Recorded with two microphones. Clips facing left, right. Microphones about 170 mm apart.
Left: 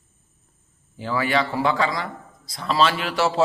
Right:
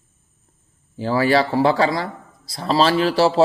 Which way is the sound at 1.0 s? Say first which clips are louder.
Right 6 dB; 35° right (ahead or behind).